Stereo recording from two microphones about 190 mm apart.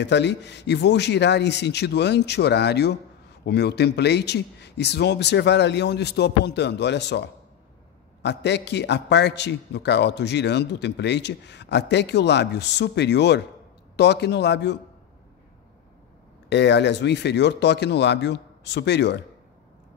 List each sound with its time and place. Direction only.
0.0 s a man's voice: 65° left (ahead or behind)
16.4 s a man's voice: 65° left (ahead or behind)